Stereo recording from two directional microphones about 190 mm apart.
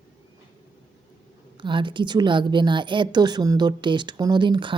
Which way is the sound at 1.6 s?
25° right (ahead or behind).